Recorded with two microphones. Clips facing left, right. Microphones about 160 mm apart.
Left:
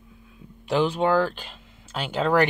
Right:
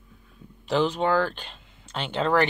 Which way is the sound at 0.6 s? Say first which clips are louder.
Left 1 dB; 10° left (ahead or behind).